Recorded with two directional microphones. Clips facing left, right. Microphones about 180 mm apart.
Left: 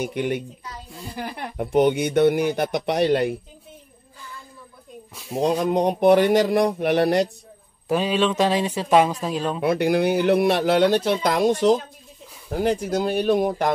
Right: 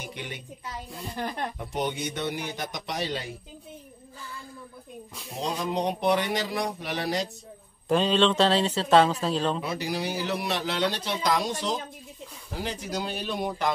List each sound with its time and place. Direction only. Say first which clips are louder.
0.0 s speech: left 14 dB; 50° left (ahead or behind)
0.9 s speech: left 1 dB; 5° left (ahead or behind)
1.6 s speech: left 15 dB; 55° left (ahead or behind)
5.4 s speech: left 8 dB; 55° left (ahead or behind)
7.9 s speech: left 1 dB; 10° left (ahead or behind)
9.6 s speech: left 11 dB; 60° left (ahead or behind)